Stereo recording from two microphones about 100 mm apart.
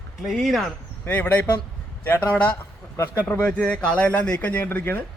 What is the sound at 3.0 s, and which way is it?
Speech, 30° left (ahead or behind).